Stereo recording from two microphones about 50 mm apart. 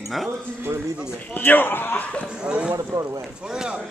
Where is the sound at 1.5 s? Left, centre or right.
Left.